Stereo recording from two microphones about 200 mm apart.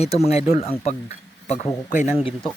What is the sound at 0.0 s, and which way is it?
Speech, 30° left (ahead or behind).